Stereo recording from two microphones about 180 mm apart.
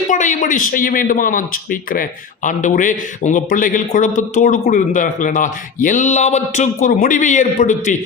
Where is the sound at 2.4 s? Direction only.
45° left (ahead or behind).